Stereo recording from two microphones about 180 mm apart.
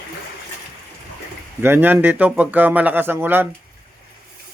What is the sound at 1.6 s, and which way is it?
Speech, 10° right (ahead or behind).